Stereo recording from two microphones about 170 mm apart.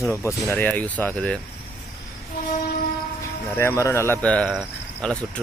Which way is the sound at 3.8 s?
15° left (ahead or behind).